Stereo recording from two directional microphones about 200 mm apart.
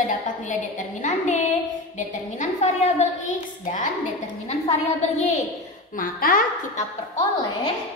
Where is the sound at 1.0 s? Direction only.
35° left (ahead or behind).